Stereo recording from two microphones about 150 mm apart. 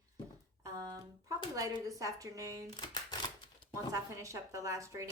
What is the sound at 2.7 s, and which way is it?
Speech, 30° left (ahead or behind).